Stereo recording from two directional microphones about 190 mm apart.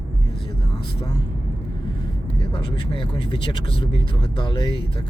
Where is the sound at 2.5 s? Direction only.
25° left (ahead or behind).